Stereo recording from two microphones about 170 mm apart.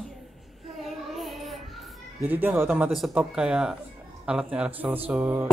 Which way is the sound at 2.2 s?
10° right (ahead or behind).